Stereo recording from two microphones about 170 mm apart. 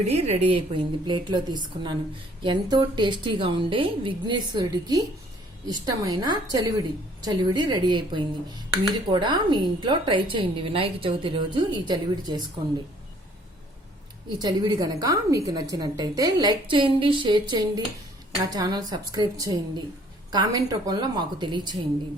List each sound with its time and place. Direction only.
0.0 s a woman's voice: 35° right (ahead or behind)
14.3 s a woman's voice: 25° right (ahead or behind)